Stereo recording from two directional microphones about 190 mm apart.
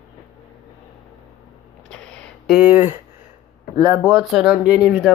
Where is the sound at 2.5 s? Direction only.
5° right (ahead or behind).